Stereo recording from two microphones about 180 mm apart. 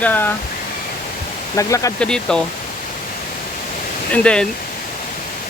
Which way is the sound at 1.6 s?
20° left (ahead or behind).